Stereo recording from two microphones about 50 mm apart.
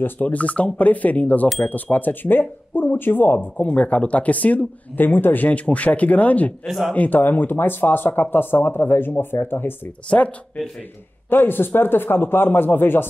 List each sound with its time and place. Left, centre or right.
0.0 s speech: left
10.0 s speech: left
11.2 s speech: left